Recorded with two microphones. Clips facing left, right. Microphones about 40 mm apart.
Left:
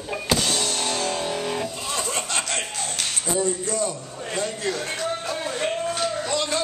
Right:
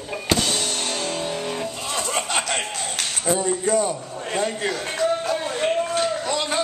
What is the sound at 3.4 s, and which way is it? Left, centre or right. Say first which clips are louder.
A man's voice: right 2 dB; right.